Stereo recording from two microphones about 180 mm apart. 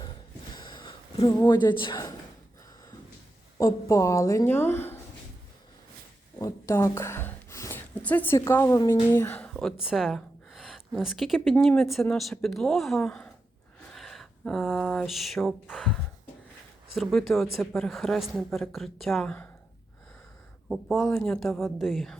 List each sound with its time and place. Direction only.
0.5 s a sound: 25° left (ahead or behind)
1.3 s speech: 20° left (ahead or behind)
3.6 s a woman's voice: 15° left (ahead or behind)
6.4 s a woman's voice: 15° left (ahead or behind)
13.9 s a sound: centre (ahead or behind)
15.7 s a woman's voice: centre (ahead or behind)
20.7 s a woman's voice: centre (ahead or behind)